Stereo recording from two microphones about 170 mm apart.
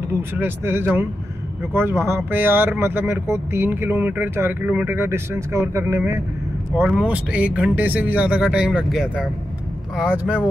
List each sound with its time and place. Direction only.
0.1 s speech: 10° right (ahead or behind)
6.8 s speech: 5° right (ahead or behind)